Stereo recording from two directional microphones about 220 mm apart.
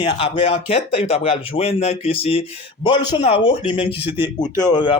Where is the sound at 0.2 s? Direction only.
25° left (ahead or behind).